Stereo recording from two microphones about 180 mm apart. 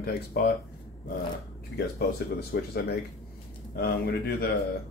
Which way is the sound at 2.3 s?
60° left (ahead or behind).